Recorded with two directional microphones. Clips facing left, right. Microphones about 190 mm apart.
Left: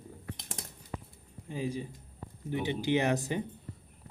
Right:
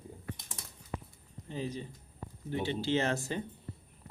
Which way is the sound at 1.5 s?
10° left (ahead or behind).